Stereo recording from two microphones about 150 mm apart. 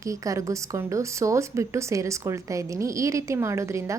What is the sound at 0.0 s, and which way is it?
Speech, 20° right (ahead or behind).